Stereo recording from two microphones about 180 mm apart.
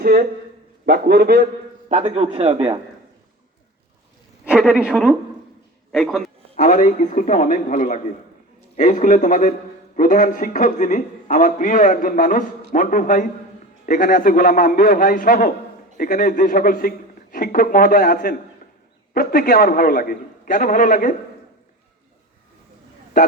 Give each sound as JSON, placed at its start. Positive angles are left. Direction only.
{"t": 0.0, "sound": "a sound", "side_deg": -55}
{"t": 0.9, "sound": "a man's voice", "side_deg": -60}
{"t": 1.9, "sound": "speech", "side_deg": -40}
{"t": 4.4, "sound": "a woman's voice", "side_deg": -5}
{"t": 6.6, "sound": "a man's voice", "side_deg": 40}